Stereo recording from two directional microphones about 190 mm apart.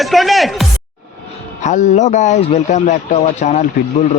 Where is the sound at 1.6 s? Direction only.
40° left (ahead or behind).